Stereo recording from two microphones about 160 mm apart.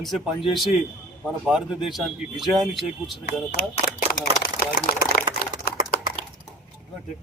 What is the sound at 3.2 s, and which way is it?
Speech, 90° left.